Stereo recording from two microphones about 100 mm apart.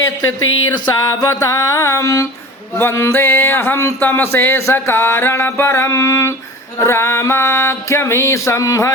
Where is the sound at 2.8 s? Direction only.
25° left (ahead or behind).